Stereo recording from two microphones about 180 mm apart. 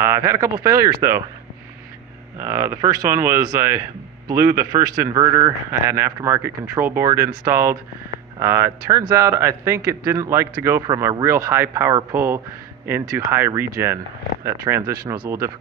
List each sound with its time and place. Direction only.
0.0 s speech: 15° right (ahead or behind)
2.3 s speech: 15° right (ahead or behind)